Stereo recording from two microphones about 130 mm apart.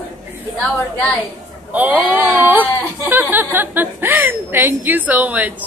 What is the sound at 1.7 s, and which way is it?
Speech, 15° right (ahead or behind).